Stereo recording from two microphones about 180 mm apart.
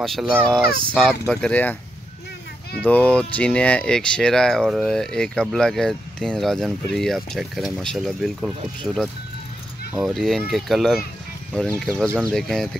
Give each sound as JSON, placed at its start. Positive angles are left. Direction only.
{"t": 0.0, "sound": "speech", "side_deg": 0}
{"t": 2.8, "sound": "speech", "side_deg": 10}